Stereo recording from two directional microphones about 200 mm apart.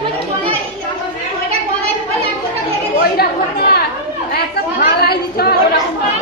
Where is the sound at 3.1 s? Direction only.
50° left (ahead or behind).